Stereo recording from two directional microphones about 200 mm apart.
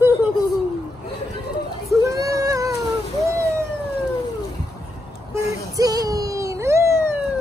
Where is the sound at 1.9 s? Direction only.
15° right (ahead or behind).